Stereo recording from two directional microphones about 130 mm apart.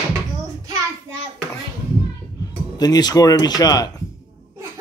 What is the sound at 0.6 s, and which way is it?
Child singing, 25° right (ahead or behind).